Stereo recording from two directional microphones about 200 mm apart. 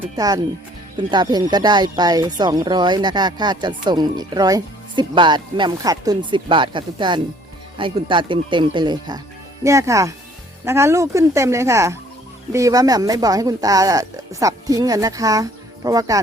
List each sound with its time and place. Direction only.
0.2 s speech: 20° right (ahead or behind)